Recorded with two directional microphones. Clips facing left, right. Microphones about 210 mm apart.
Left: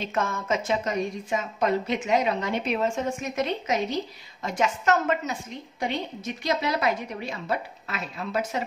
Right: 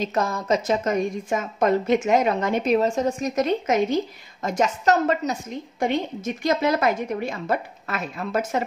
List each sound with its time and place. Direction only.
0.0 s a woman's voice: 40° right (ahead or behind)